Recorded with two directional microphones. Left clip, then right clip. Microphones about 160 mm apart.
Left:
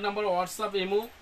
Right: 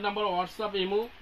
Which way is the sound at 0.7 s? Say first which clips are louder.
Left 1 dB; 35° left (ahead or behind).